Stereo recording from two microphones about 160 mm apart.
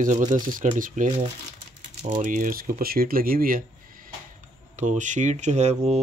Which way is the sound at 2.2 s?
55° right (ahead or behind).